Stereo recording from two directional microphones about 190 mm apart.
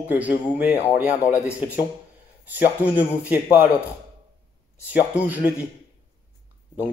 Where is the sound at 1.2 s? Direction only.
15° left (ahead or behind).